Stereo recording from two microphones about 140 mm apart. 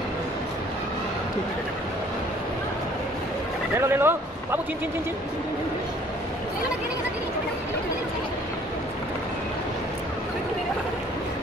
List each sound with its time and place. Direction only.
3.8 s speech: 15° right (ahead or behind)